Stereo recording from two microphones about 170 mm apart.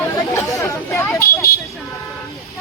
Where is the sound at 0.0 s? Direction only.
15° left (ahead or behind).